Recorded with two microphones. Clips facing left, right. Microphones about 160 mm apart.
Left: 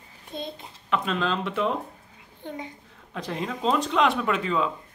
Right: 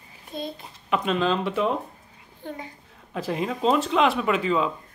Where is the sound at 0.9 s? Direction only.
5° right (ahead or behind).